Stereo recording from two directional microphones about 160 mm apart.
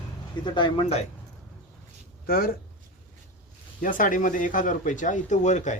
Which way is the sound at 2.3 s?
65° left (ahead or behind).